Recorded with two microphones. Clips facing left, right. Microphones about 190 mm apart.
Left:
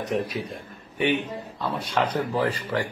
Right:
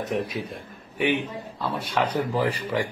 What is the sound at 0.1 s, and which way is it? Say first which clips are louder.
A man's voice: left 1 dB; 5° right (ahead or behind).